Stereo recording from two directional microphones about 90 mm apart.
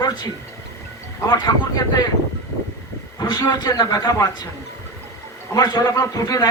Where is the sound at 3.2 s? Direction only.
55° left (ahead or behind).